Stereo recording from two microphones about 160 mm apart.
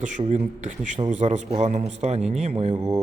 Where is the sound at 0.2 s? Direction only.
45° right (ahead or behind).